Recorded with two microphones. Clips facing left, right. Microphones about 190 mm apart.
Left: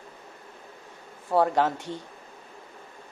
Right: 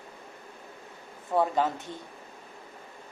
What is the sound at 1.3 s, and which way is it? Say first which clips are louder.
Speech: left 3 dB; 85° left.